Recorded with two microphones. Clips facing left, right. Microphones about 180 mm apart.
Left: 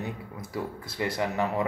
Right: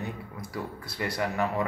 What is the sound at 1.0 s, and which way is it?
Speech, 20° left (ahead or behind).